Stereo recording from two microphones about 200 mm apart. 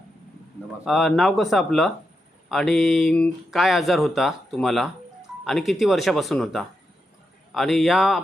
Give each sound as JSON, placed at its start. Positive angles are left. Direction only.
{"t": 0.9, "sound": "speech", "side_deg": 0}